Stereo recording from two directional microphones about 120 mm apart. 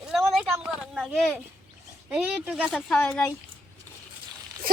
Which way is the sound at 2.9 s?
10° left (ahead or behind).